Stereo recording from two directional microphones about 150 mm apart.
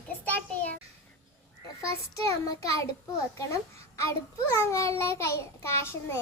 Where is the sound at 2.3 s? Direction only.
20° left (ahead or behind).